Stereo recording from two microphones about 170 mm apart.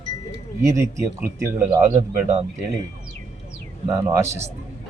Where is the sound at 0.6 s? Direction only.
15° right (ahead or behind).